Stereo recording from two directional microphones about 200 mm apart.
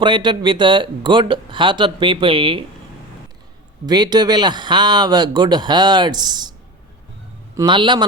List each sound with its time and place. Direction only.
0.0 s speech: 25° right (ahead or behind)
3.8 s speech: 20° right (ahead or behind)
7.5 s speech: 20° right (ahead or behind)